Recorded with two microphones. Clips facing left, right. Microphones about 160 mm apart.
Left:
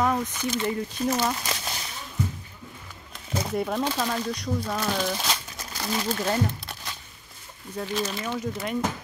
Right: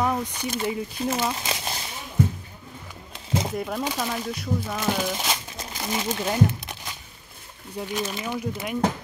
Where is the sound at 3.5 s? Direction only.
Centre (ahead or behind).